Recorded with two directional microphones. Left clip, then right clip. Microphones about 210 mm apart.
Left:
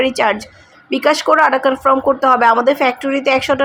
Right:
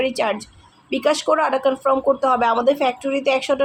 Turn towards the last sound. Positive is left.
turn(degrees=15)  # may be behind; listen again after turning